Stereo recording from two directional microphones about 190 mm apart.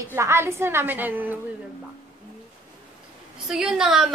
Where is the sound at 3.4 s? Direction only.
5° right (ahead or behind).